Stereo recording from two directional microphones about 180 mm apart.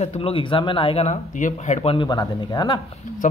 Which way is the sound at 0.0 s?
30° left (ahead or behind).